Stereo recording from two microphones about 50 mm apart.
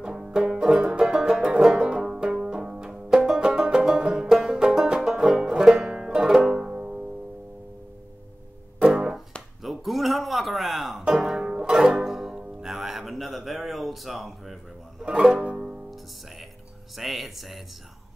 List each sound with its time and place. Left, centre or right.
0.0 s banjo: centre
8.8 s music: centre
9.6 s music: centre
11.1 s music: centre
15.0 s music: centre
16.9 s a sound: centre